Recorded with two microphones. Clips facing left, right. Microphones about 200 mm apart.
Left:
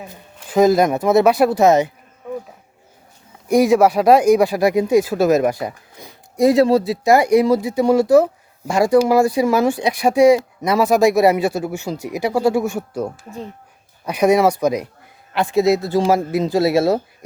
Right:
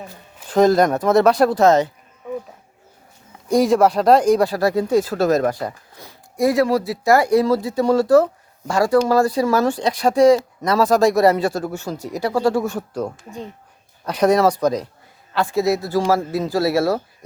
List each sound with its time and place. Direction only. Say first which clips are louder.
0.4 s speech: left 1 dB; 5° left (ahead or behind)
3.5 s speech: left 2 dB; 10° left (ahead or behind)